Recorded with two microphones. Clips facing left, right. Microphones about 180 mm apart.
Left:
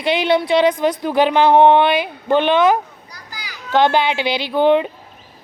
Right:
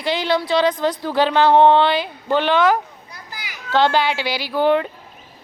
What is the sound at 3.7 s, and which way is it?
A woman's voice, 20° left (ahead or behind).